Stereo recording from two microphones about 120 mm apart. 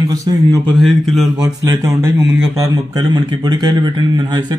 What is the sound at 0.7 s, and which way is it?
Speech, centre (ahead or behind).